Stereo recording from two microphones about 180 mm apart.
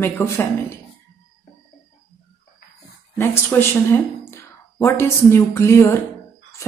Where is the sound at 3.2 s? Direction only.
10° left (ahead or behind).